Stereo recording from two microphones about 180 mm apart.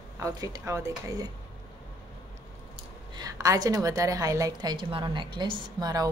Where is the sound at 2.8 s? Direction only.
20° right (ahead or behind).